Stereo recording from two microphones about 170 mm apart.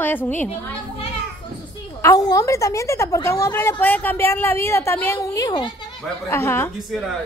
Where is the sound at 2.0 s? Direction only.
20° left (ahead or behind).